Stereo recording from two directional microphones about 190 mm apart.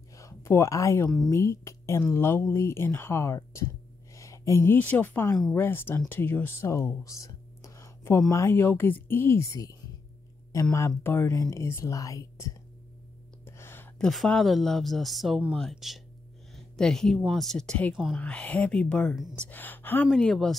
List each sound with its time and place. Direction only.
0.2 s speech: 15° left (ahead or behind)